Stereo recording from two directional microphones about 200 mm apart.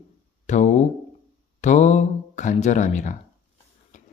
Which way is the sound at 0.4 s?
35° left (ahead or behind).